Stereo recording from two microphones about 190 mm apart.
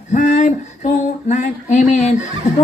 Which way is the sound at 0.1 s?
40° left (ahead or behind).